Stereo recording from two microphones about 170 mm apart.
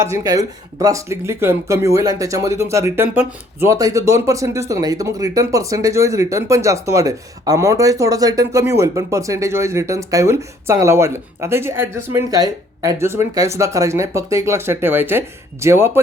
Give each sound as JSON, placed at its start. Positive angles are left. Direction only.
{"t": 0.0, "sound": "speech", "side_deg": -20}